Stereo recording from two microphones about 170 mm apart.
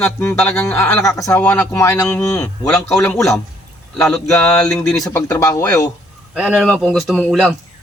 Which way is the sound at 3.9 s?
5° left (ahead or behind).